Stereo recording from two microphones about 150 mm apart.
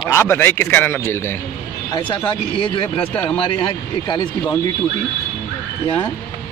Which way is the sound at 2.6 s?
35° left (ahead or behind).